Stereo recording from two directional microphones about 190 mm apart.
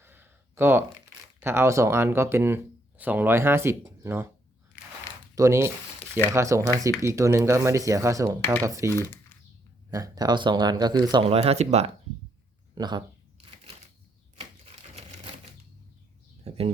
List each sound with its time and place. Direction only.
0.0 s a sound: 10° right (ahead or behind)
1.4 s speech: 10° right (ahead or behind)
5.3 s speech: 15° right (ahead or behind)
8.9 s speech: 15° left (ahead or behind)
9.9 s speech: 20° right (ahead or behind)
11.3 s speech: 35° right (ahead or behind)
12.7 s speech: 20° right (ahead or behind)
14.3 s typewriter: 30° right (ahead or behind)
16.4 s a sound: 30° right (ahead or behind)